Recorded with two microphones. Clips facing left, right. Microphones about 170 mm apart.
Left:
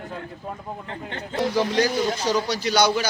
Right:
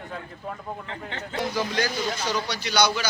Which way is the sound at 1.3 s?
35° left (ahead or behind).